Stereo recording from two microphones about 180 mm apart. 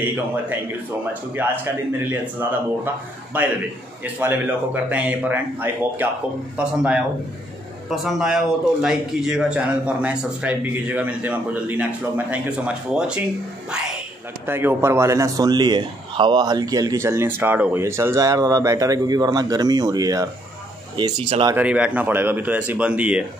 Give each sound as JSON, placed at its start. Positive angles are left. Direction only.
{"t": 0.0, "sound": "a man's voice", "side_deg": -10}
{"t": 14.4, "sound": "speech", "side_deg": -10}
{"t": 21.5, "sound": "a man's voice", "side_deg": -5}